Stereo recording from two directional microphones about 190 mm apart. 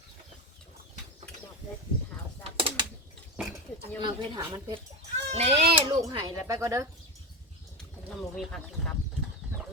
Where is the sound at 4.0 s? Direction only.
25° right (ahead or behind).